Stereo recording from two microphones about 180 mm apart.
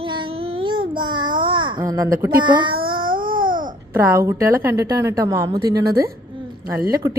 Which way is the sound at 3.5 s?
50° right (ahead or behind).